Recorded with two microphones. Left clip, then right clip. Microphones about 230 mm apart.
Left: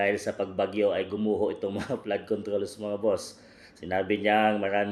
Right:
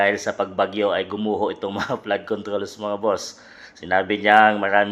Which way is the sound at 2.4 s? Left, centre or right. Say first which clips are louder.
Right 5 dB; right.